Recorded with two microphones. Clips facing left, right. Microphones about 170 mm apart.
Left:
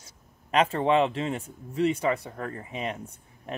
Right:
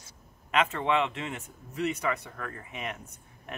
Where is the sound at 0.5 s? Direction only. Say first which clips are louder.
Left 4 dB; 35° left (ahead or behind).